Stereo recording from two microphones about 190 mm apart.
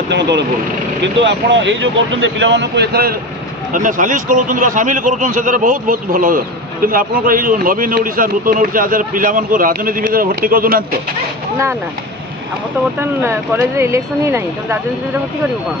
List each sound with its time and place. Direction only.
0.1 s speech: 65° right (ahead or behind)
3.7 s a man's voice: 45° right (ahead or behind)
13.0 s speech: 15° right (ahead or behind)